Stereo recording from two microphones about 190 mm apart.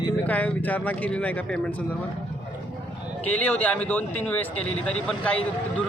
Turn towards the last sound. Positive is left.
turn(degrees=5)  # may be behind; listen again after turning